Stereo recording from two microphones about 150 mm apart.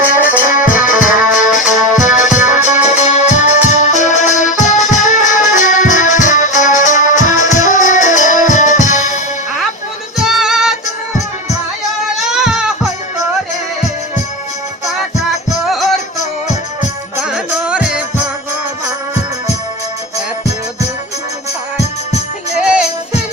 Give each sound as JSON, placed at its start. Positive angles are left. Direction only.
{"t": 0.4, "sound": "music", "side_deg": 60}
{"t": 1.2, "sound": "music", "side_deg": -5}
{"t": 1.5, "sound": "music", "side_deg": 60}
{"t": 2.8, "sound": "organ", "side_deg": 50}
{"t": 6.8, "sound": "music", "side_deg": 55}
{"t": 10.2, "sound": "music", "side_deg": 0}
{"t": 12.0, "sound": "music", "side_deg": -5}
{"t": 15.2, "sound": "music", "side_deg": 0}
{"t": 17.2, "sound": "music", "side_deg": -5}
{"t": 22.6, "sound": "music", "side_deg": -5}